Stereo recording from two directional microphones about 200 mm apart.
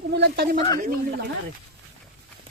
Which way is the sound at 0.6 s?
20° left (ahead or behind).